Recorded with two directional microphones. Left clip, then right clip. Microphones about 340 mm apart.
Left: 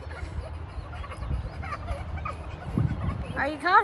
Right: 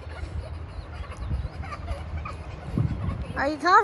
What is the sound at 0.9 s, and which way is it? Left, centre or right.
Fowl, centre.